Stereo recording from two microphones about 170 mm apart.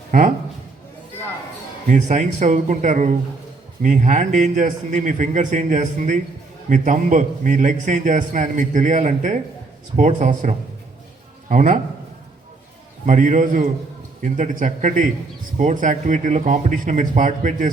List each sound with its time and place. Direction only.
0.1 s a man's voice: 50° right (ahead or behind)
1.9 s a man's voice: 45° right (ahead or behind)
13.1 s a man's voice: 50° right (ahead or behind)